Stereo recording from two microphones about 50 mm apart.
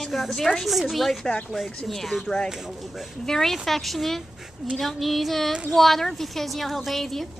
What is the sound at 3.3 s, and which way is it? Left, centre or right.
A woman's voice, centre.